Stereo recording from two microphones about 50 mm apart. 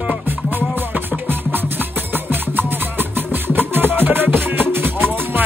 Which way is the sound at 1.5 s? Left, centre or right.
Right.